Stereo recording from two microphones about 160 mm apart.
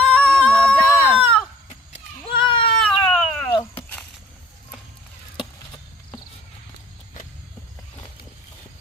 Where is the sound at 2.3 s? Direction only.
30° left (ahead or behind).